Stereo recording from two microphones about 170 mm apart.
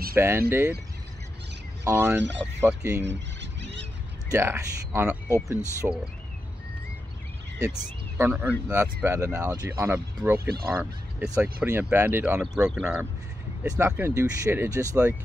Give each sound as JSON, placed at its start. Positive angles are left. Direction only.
{"t": 0.1, "sound": "speech", "side_deg": -15}
{"t": 1.9, "sound": "speech", "side_deg": -15}
{"t": 3.1, "sound": "a sound", "side_deg": -90}
{"t": 4.3, "sound": "speech", "side_deg": -15}
{"t": 8.2, "sound": "speech", "side_deg": -10}
{"t": 13.7, "sound": "speech", "side_deg": -15}